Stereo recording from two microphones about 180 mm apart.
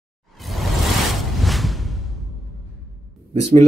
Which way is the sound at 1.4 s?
Centre (ahead or behind).